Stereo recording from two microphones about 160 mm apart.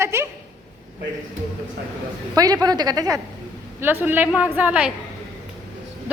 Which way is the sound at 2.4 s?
25° right (ahead or behind).